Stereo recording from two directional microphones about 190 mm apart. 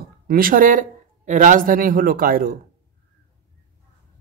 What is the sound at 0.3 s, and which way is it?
Speech, 50° right (ahead or behind).